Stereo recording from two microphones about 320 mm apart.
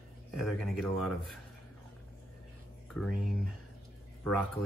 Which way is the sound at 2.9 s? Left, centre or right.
Centre.